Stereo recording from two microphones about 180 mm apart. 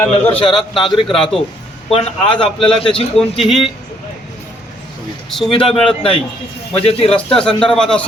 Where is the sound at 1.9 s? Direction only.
30° left (ahead or behind).